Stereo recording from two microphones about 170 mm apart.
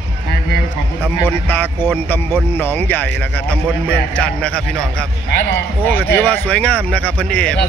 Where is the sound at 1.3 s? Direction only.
10° left (ahead or behind).